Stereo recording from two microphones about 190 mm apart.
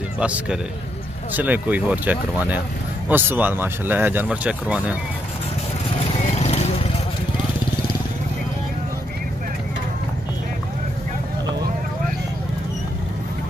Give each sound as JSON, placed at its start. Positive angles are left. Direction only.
{"t": 0.2, "sound": "speech", "side_deg": -5}
{"t": 6.2, "sound": "vehicle", "side_deg": 35}